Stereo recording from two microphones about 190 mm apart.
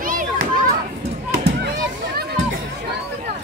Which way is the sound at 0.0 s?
45° right (ahead or behind).